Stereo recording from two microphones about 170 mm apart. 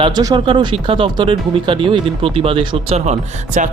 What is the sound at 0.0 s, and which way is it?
Speech, 25° right (ahead or behind).